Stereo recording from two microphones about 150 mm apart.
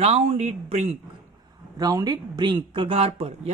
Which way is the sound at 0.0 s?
45° right (ahead or behind).